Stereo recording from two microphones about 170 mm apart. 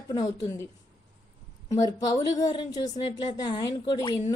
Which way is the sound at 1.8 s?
20° left (ahead or behind).